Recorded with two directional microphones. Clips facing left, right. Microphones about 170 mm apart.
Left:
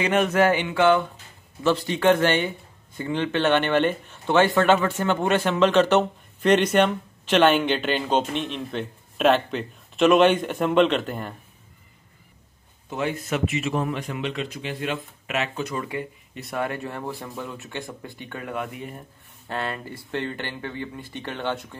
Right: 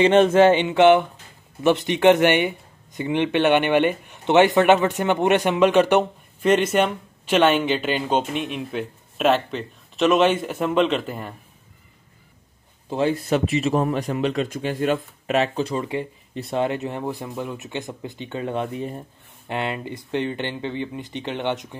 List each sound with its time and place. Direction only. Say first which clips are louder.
0.0 s speech: right 6 dB; 25° right (ahead or behind); by 11.3 s centre (ahead or behind)
12.9 s speech: right 6 dB; 30° right (ahead or behind)
19.4 s speech: right 3 dB; 20° right (ahead or behind)